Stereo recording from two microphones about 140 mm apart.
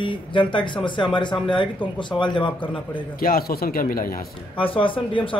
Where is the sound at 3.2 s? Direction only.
90° left.